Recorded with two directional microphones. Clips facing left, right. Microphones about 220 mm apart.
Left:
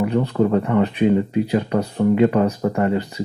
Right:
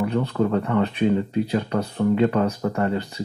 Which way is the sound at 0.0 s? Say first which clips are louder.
Left 4 dB; 15° left (ahead or behind).